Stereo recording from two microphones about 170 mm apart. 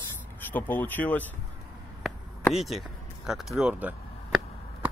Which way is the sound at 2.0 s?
Centre (ahead or behind).